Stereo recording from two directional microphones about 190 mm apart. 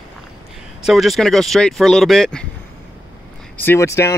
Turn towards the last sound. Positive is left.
turn(degrees=15)  # may be behind; listen again after turning